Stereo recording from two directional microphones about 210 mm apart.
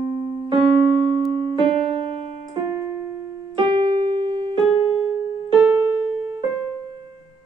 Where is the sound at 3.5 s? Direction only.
20° right (ahead or behind).